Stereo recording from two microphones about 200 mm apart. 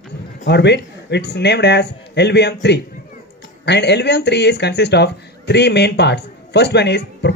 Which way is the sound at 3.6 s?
60° left (ahead or behind).